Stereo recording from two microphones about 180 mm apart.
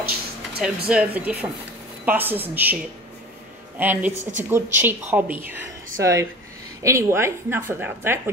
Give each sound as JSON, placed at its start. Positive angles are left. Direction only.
{"t": 0.6, "sound": "a woman's voice", "side_deg": -5}
{"t": 4.1, "sound": "a woman's voice", "side_deg": -40}
{"t": 4.5, "sound": "a woman's voice", "side_deg": -10}